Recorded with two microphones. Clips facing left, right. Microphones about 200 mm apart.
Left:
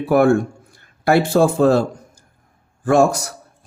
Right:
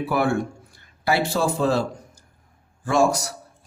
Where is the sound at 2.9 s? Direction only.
55° left (ahead or behind).